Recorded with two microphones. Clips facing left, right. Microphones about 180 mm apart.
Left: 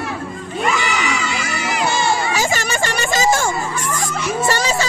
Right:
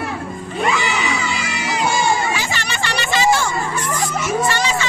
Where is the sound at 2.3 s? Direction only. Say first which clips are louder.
Left 5 dB; 45° left (ahead or behind).